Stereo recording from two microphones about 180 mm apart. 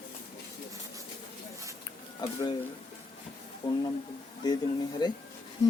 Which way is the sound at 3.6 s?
25° left (ahead or behind).